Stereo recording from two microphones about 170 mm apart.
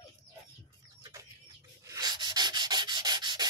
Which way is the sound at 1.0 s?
20° right (ahead or behind).